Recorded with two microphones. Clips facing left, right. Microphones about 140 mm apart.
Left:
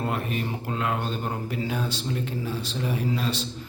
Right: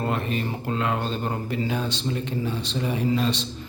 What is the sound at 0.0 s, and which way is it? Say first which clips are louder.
Speech: right 2 dB; 10° left (ahead or behind).